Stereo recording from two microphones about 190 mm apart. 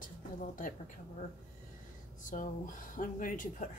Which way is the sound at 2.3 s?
45° left (ahead or behind).